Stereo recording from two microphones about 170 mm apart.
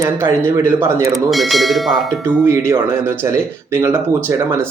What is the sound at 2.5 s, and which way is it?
Speech, 15° right (ahead or behind).